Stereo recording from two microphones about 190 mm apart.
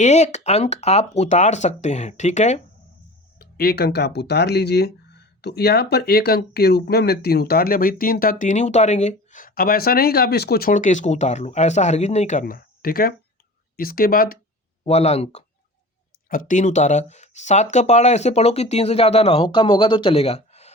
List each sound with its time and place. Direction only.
0.0 s speech: 35° left (ahead or behind)
3.3 s speech: 55° left (ahead or behind)
14.8 s speech: 35° left (ahead or behind)